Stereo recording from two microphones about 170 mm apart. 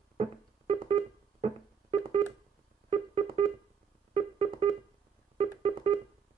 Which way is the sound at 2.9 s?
35° right (ahead or behind).